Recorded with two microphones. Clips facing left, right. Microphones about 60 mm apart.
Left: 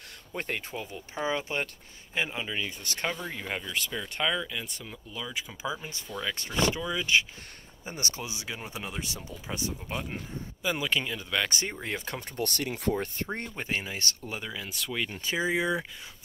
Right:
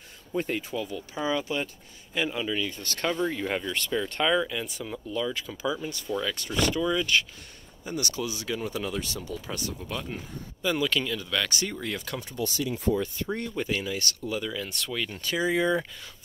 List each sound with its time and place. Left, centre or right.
0.3 s speech: left; by 3.2 s centre
3.3 s speech: centre; by 6.8 s left
6.8 s speech: centre
7.8 s speech: left
12.3 s speech: left
12.9 s speech: left
13.3 s speech: left
14.9 s speech: centre